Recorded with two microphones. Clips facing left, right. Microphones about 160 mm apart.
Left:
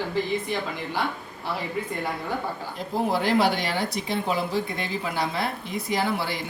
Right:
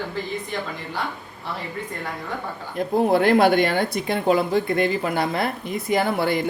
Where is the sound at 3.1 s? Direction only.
55° right (ahead or behind).